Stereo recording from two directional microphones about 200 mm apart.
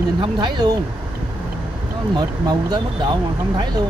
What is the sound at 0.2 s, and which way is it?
Speech, 20° right (ahead or behind).